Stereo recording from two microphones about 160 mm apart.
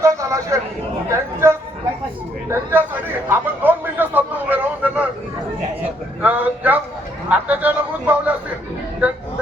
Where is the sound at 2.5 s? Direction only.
15° right (ahead or behind).